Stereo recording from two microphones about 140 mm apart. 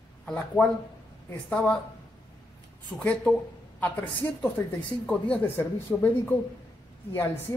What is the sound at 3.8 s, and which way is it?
A woman's voice, 10° left (ahead or behind).